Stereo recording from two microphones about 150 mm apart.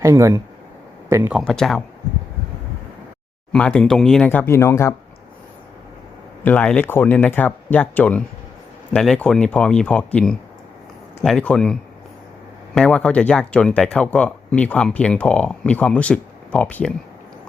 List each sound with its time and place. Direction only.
0.0 s speech: 20° right (ahead or behind)
1.3 s speech: centre (ahead or behind)
3.5 s speech: 5° left (ahead or behind)
6.4 s speech: 10° left (ahead or behind)